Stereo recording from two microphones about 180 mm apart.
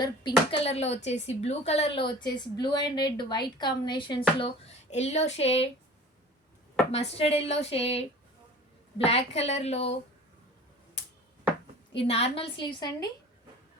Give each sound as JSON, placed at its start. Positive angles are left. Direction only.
{"t": 0.0, "sound": "speech", "side_deg": 25}
{"t": 6.9, "sound": "speech", "side_deg": 35}
{"t": 9.0, "sound": "speech", "side_deg": 35}
{"t": 11.9, "sound": "speech", "side_deg": 35}